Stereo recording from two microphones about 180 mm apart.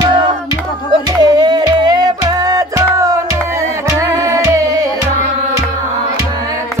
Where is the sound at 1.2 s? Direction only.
20° right (ahead or behind).